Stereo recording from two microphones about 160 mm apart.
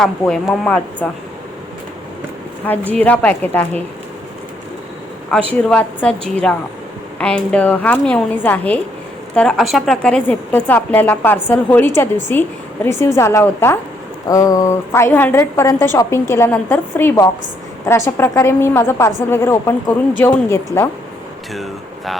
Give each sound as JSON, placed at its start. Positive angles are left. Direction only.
{"t": 0.0, "sound": "speech", "side_deg": 5}
{"t": 2.9, "sound": "a woman's voice", "side_deg": 5}
{"t": 5.5, "sound": "a woman's voice", "side_deg": 10}
{"t": 21.5, "sound": "speech", "side_deg": 0}